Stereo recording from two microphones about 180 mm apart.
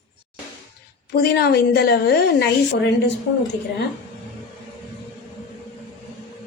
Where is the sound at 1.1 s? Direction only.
60° left (ahead or behind).